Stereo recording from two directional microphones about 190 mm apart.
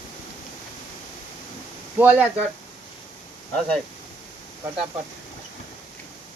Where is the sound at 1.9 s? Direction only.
10° right (ahead or behind).